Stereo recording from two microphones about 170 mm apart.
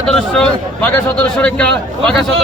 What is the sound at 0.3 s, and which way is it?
A man's voice, 10° left (ahead or behind).